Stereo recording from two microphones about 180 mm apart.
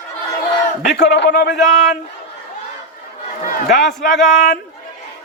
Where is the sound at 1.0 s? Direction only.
75° left (ahead or behind).